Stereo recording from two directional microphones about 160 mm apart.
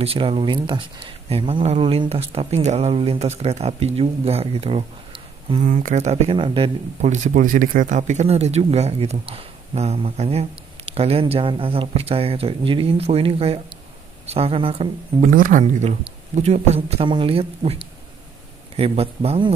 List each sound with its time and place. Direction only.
0.0 s speech: 35° right (ahead or behind)
5.7 s speech: 55° right (ahead or behind); by 6.7 s 35° right (ahead or behind)
7.0 s speech: 50° right (ahead or behind)
15.1 s speech: 55° right (ahead or behind); by 17.7 s 35° right (ahead or behind)
18.8 s speech: 35° right (ahead or behind)